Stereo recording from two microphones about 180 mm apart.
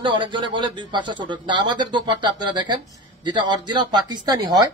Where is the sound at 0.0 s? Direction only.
25° right (ahead or behind).